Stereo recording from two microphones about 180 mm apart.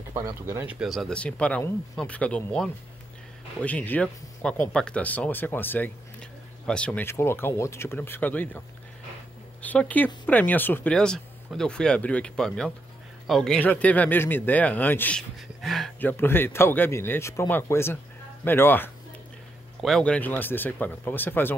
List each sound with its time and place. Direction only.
0.1 s speech: 15° right (ahead or behind)
0.7 s speech: centre (ahead or behind)